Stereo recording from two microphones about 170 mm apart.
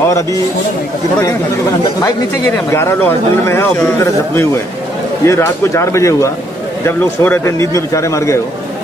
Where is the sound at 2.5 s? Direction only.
15° left (ahead or behind).